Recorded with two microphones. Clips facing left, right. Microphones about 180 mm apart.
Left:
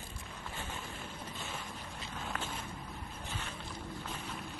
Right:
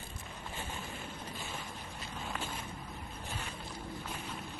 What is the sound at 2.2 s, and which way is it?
Boat, centre (ahead or behind).